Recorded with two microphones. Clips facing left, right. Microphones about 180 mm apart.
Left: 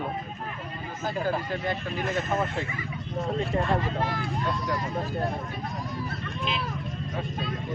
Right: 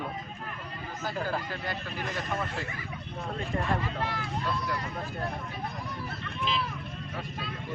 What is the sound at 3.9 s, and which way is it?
Speech, 35° left (ahead or behind).